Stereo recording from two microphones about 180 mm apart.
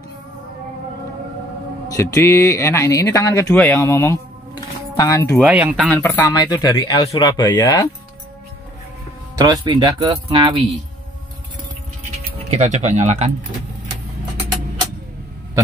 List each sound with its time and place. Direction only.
2.0 s speech: 15° left (ahead or behind)
5.4 s speech: 10° right (ahead or behind)
5.9 s speech: 15° left (ahead or behind)
9.4 s speech: 25° right (ahead or behind)
12.4 s speech: 40° right (ahead or behind)